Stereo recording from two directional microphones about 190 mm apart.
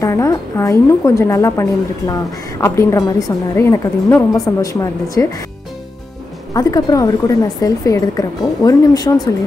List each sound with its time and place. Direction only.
0.0 s a woman's voice: 15° left (ahead or behind)
6.5 s a woman's voice: 20° left (ahead or behind)